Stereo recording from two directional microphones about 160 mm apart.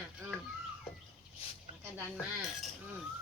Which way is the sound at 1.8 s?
10° right (ahead or behind).